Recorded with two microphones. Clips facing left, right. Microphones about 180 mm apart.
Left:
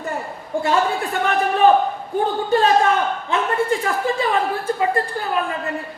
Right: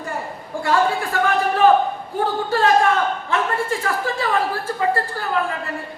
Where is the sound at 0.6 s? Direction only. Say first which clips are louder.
Right 1 dB; 20° left (ahead or behind).